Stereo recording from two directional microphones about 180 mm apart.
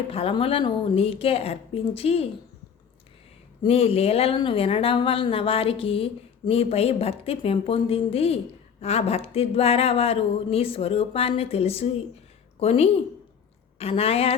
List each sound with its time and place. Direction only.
0.1 s a woman's voice: 30° left (ahead or behind)
3.6 s a woman's voice: 30° left (ahead or behind)